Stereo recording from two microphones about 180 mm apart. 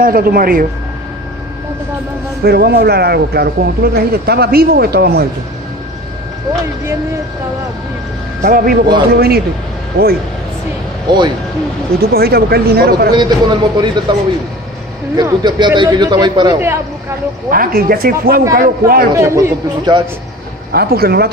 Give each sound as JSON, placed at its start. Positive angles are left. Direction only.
{"t": 0.0, "sound": "speech", "side_deg": -55}
{"t": 2.4, "sound": "speech", "side_deg": -60}
{"t": 8.4, "sound": "speech", "side_deg": -50}
{"t": 11.1, "sound": "a man's voice", "side_deg": -25}
{"t": 12.1, "sound": "speech", "side_deg": -60}
{"t": 13.1, "sound": "a man's voice", "side_deg": -25}
{"t": 15.1, "sound": "a man's voice", "side_deg": -25}
{"t": 17.5, "sound": "speech", "side_deg": -55}
{"t": 19.1, "sound": "speech", "side_deg": -15}
{"t": 20.7, "sound": "speech", "side_deg": -60}